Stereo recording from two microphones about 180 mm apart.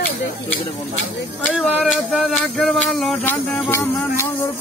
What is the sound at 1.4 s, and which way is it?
Speech, centre (ahead or behind).